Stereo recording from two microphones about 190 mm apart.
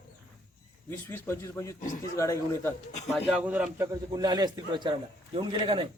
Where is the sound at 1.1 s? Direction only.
15° left (ahead or behind).